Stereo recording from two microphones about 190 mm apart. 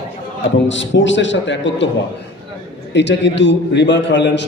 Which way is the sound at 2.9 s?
65° left (ahead or behind).